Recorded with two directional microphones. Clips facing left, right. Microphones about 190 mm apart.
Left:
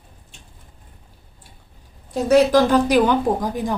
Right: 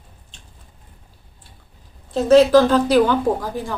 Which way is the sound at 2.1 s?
15° left (ahead or behind).